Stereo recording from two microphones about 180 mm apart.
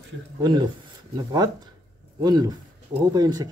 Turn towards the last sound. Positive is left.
turn(degrees=-20)  # may be behind; listen again after turning